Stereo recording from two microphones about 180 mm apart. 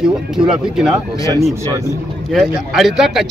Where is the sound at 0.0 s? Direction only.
5° right (ahead or behind).